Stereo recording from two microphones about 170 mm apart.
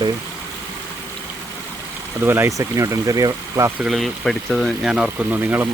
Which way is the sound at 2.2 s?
15° right (ahead or behind).